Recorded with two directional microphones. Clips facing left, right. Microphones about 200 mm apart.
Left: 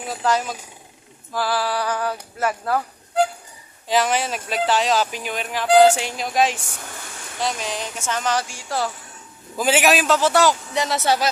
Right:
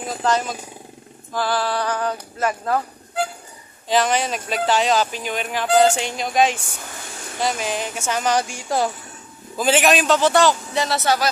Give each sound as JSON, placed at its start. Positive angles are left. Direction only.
{"t": 0.2, "sound": "music", "side_deg": 5}
{"t": 3.8, "sound": "speech", "side_deg": 5}
{"t": 9.6, "sound": "speech", "side_deg": 10}
{"t": 10.8, "sound": "music", "side_deg": 15}